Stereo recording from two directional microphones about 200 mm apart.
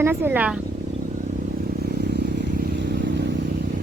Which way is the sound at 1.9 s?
55° right (ahead or behind).